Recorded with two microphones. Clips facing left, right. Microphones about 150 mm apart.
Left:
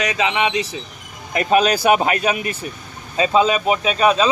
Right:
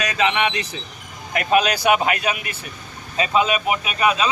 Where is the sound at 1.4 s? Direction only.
35° left (ahead or behind).